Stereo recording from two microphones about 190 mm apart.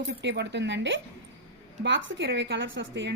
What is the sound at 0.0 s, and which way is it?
A woman's voice, 65° right (ahead or behind).